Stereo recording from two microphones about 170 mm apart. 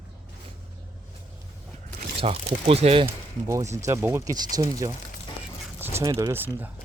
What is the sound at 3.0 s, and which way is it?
Speech, 15° right (ahead or behind).